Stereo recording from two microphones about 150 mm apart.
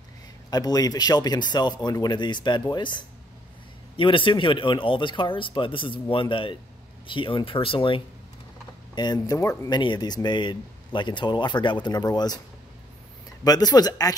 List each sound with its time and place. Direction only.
0.5 s speech: 25° left (ahead or behind)
13.4 s speech: 25° left (ahead or behind)